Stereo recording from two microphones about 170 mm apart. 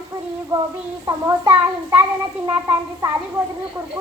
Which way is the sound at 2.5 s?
15° right (ahead or behind).